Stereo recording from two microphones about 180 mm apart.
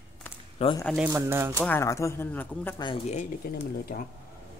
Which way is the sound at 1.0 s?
15° right (ahead or behind).